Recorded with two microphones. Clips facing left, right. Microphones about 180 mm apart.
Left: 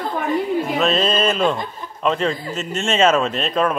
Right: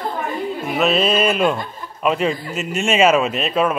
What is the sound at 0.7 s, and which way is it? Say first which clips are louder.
Speech: right 4 dB; 5° right (ahead or behind).